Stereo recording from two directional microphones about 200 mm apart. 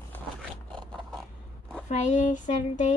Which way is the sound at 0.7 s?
5° left (ahead or behind).